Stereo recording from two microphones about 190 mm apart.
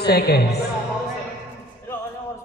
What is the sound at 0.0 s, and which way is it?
Speech, 55° left (ahead or behind).